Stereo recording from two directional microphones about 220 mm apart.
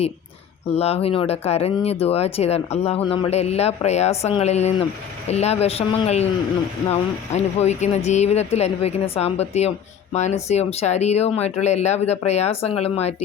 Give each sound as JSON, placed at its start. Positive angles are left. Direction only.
{"t": 0.7, "sound": "speech", "side_deg": 30}
{"t": 7.3, "sound": "speech", "side_deg": 30}